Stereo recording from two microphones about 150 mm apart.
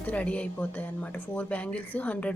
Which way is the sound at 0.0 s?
10° left (ahead or behind).